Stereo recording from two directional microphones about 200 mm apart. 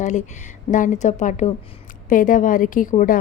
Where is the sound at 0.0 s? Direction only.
35° left (ahead or behind).